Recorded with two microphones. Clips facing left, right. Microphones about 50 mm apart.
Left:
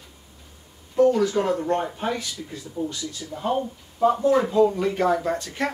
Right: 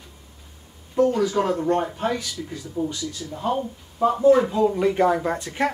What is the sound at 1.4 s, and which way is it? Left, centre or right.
Speech, centre.